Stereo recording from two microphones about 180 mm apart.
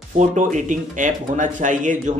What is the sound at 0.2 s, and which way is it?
Speech, 40° right (ahead or behind).